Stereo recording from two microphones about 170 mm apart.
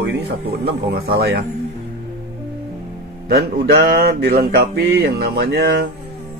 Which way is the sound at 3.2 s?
75° right (ahead or behind).